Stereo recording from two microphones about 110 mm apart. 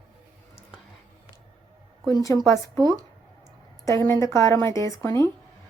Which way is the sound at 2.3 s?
20° left (ahead or behind).